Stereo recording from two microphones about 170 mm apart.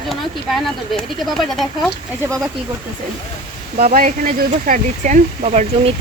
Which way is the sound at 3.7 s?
60° right (ahead or behind).